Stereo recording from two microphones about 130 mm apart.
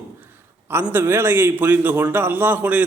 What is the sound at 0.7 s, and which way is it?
A man's voice, 15° right (ahead or behind).